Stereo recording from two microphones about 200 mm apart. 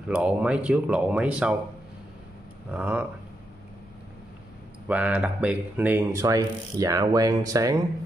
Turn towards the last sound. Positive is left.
turn(degrees=-15)  # may be behind; listen again after turning